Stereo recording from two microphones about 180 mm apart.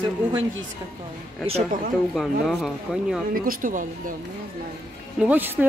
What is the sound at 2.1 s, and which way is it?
Speech, centre (ahead or behind).